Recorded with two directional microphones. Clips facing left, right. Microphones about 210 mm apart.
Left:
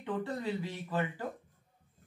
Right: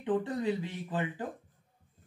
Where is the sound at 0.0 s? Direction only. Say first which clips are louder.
Right 5 dB; 20° right (ahead or behind).